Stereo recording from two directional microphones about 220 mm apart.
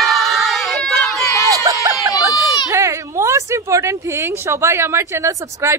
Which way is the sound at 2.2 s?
15° right (ahead or behind).